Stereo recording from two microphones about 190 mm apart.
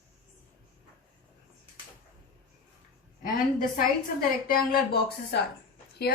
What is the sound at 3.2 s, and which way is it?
A woman's voice, 45° left (ahead or behind).